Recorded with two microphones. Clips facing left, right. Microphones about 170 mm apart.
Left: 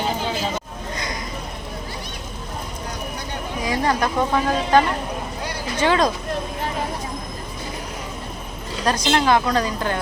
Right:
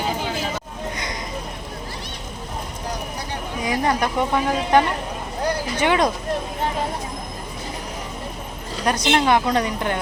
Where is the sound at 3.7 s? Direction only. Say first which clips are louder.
Even; 20° right (ahead or behind).